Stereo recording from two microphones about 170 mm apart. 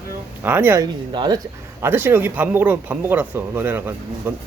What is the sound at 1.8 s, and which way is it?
Speech, 15° right (ahead or behind).